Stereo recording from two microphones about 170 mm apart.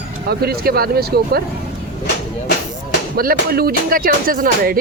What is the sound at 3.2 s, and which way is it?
Speech, 60° right (ahead or behind).